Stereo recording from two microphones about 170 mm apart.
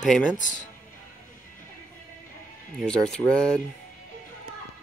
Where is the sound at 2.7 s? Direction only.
5° left (ahead or behind).